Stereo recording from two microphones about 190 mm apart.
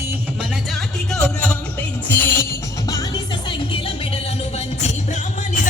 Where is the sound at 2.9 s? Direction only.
20° left (ahead or behind).